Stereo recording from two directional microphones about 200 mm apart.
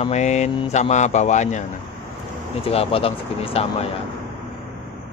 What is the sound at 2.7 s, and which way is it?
Speech, 30° left (ahead or behind).